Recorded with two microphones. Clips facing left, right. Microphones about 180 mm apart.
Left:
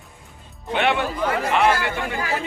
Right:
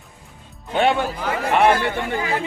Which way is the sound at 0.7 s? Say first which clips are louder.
Right 3 dB; 40° right (ahead or behind).